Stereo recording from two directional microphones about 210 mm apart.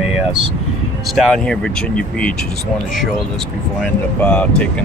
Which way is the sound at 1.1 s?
Centre (ahead or behind).